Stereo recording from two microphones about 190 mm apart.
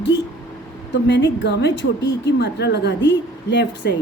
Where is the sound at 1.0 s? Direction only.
65° left (ahead or behind).